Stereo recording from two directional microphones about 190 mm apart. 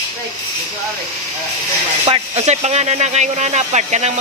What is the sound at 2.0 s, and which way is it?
Speech, 30° right (ahead or behind).